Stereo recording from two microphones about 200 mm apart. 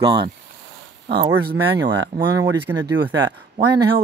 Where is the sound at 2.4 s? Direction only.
15° right (ahead or behind).